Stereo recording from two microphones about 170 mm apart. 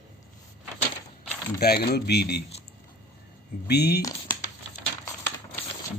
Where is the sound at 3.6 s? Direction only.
70° left (ahead or behind).